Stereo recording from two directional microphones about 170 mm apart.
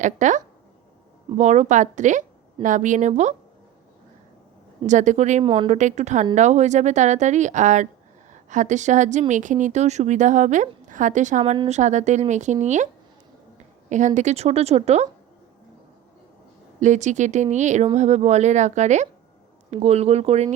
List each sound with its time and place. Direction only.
0.0 s a woman's voice: 45° right (ahead or behind)
4.9 s a woman's voice: 45° right (ahead or behind)
5.5 s a woman's voice: 30° right (ahead or behind)
5.7 s a woman's voice: 45° right (ahead or behind)
13.9 s a woman's voice: 45° right (ahead or behind)
16.8 s a woman's voice: 45° right (ahead or behind)